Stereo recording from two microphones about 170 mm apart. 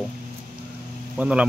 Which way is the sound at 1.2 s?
10° right (ahead or behind).